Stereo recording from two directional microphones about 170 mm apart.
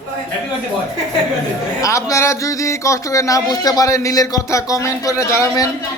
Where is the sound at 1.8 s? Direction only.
20° left (ahead or behind).